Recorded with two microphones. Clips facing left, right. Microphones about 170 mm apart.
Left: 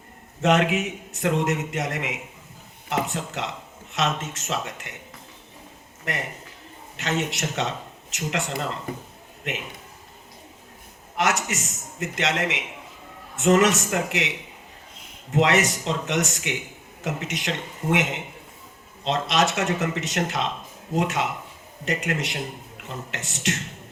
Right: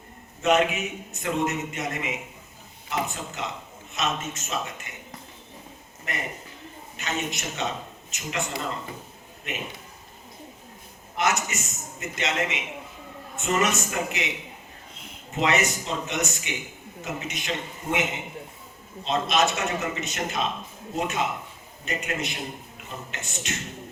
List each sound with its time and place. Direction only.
0.4 s a man's voice: 90° left
6.1 s a man's voice: 85° left
9.5 s a man's voice: 85° left
11.2 s a man's voice: 85° left
15.3 s a man's voice: 85° left
19.0 s a man's voice: 85° left